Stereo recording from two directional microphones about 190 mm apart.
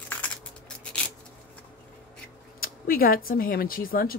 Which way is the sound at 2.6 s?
50° left (ahead or behind).